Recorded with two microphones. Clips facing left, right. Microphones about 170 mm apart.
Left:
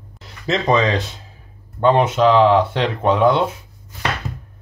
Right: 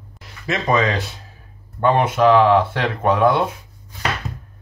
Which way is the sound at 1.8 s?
20° left (ahead or behind).